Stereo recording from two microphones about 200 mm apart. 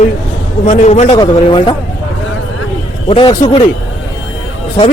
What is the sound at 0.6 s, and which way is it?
A man's voice, 35° left (ahead or behind).